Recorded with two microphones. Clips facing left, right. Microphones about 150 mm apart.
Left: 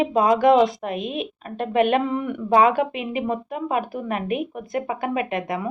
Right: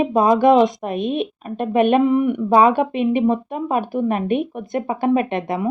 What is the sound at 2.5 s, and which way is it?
Speech, 30° right (ahead or behind).